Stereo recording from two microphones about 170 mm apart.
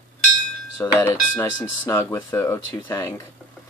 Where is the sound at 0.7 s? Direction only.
15° left (ahead or behind).